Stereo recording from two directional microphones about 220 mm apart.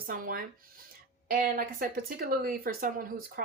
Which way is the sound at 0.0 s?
40° right (ahead or behind).